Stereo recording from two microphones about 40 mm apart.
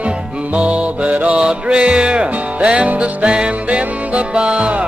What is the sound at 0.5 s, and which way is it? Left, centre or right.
Mantra, right.